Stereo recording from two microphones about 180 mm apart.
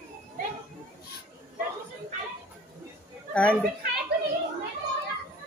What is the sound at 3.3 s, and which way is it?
Speech, 5° left (ahead or behind).